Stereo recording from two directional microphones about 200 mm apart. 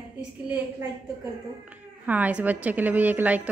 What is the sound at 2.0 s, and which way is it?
A woman's voice, 5° right (ahead or behind).